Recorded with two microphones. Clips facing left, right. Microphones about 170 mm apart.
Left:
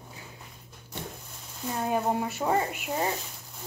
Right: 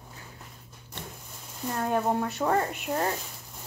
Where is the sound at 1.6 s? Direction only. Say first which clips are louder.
Right 1 dB; 5° left (ahead or behind).